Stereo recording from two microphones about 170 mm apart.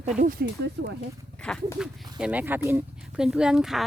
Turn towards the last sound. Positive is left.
turn(degrees=-5)  # may be behind; listen again after turning